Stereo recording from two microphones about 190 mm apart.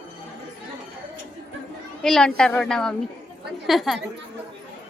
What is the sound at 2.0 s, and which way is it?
A woman's voice, 5° left (ahead or behind).